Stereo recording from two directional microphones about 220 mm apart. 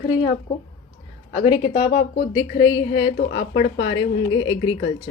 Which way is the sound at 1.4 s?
25° left (ahead or behind).